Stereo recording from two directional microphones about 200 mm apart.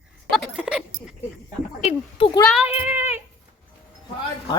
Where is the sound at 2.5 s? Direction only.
10° right (ahead or behind).